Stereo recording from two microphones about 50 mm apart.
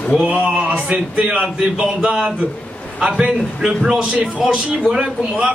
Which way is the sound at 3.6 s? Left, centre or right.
Centre.